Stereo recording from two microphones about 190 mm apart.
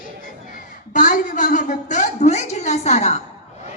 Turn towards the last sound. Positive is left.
turn(degrees=35)  # may be behind; listen again after turning